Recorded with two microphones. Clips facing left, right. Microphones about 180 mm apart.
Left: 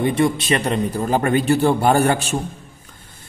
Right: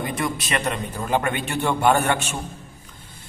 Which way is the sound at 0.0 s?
30° left (ahead or behind).